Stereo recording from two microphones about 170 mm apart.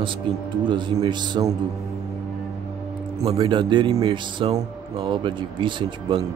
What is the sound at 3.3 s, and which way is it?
Speech, 30° right (ahead or behind).